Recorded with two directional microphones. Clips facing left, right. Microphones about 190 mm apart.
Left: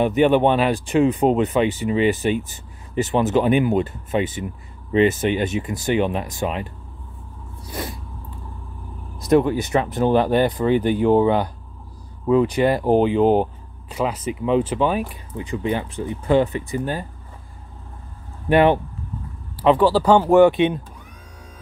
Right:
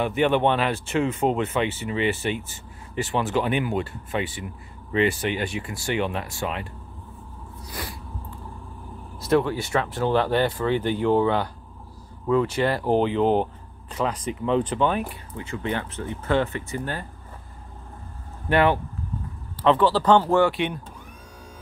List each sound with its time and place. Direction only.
0.0 s speech: 20° left (ahead or behind)
9.2 s speech: 15° left (ahead or behind)
18.5 s speech: 20° left (ahead or behind)